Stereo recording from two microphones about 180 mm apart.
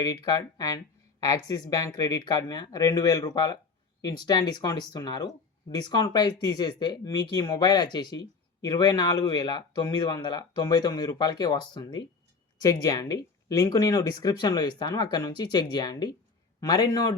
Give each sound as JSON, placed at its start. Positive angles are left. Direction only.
{"t": 0.0, "sound": "a man's voice", "side_deg": 20}